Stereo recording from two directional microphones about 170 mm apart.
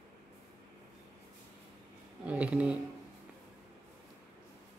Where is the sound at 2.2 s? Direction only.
5° right (ahead or behind).